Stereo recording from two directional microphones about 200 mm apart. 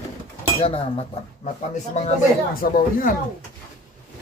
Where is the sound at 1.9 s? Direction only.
40° left (ahead or behind).